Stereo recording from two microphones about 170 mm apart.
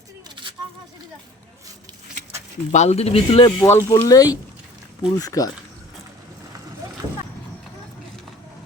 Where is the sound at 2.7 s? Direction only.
40° left (ahead or behind).